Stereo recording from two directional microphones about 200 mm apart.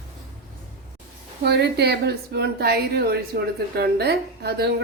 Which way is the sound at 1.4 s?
55° right (ahead or behind).